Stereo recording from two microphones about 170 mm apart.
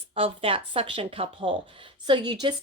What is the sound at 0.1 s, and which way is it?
A woman's voice, 35° right (ahead or behind).